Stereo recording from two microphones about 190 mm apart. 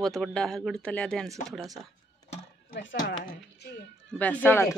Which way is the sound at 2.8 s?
55° left (ahead or behind).